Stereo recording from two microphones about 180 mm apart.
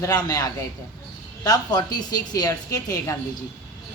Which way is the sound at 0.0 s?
20° left (ahead or behind).